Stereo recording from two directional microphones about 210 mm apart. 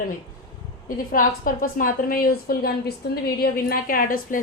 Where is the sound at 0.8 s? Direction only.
40° left (ahead or behind).